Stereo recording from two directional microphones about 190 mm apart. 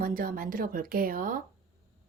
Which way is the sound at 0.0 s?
45° right (ahead or behind).